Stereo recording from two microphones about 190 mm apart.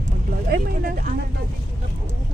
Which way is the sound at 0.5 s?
50° right (ahead or behind).